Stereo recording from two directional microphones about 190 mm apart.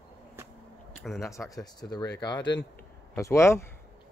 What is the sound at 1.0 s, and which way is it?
Speech, centre (ahead or behind).